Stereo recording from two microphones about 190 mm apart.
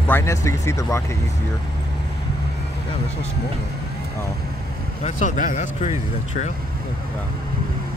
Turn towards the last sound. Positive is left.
turn(degrees=40)  # may be behind; listen again after turning